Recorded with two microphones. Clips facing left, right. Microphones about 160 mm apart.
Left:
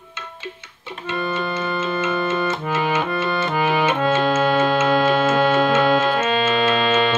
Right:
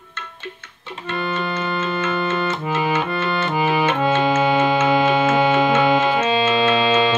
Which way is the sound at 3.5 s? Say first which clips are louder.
Right 1 dB; 5° right (ahead or behind).